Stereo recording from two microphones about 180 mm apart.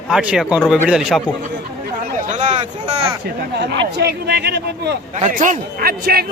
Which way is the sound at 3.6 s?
65° right (ahead or behind).